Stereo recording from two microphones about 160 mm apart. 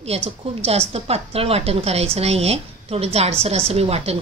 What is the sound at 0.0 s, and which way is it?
A woman's voice, 40° right (ahead or behind).